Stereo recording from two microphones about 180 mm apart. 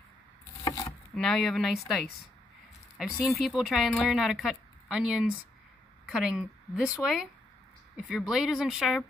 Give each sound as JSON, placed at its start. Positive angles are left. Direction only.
{"t": 0.7, "sound": "a sound", "side_deg": 20}
{"t": 1.1, "sound": "a woman's voice", "side_deg": 0}
{"t": 8.3, "sound": "a woman's voice", "side_deg": -5}